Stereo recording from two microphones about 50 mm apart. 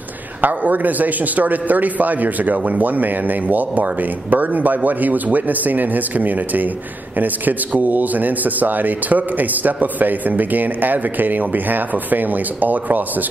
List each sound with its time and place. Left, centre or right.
0.4 s a man's voice: right